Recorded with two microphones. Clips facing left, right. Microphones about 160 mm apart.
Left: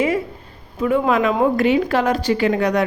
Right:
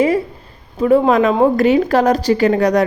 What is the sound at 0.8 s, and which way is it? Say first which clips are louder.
Speech: right 5 dB; 35° right (ahead or behind).